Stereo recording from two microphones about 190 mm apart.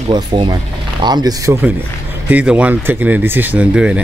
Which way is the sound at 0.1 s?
25° right (ahead or behind).